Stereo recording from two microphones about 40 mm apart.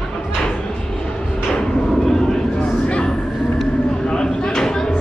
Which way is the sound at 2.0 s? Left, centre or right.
Centre.